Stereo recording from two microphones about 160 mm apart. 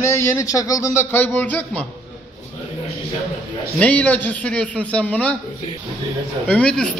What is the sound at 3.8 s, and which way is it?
A man's voice, 10° left (ahead or behind).